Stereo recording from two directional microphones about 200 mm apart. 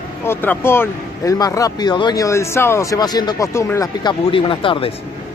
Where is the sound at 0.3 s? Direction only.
10° left (ahead or behind).